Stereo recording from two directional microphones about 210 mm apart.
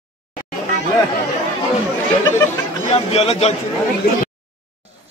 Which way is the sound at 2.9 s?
30° left (ahead or behind).